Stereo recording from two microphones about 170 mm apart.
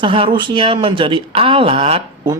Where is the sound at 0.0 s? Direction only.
30° right (ahead or behind).